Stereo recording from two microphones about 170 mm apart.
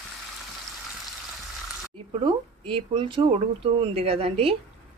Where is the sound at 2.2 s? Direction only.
30° right (ahead or behind).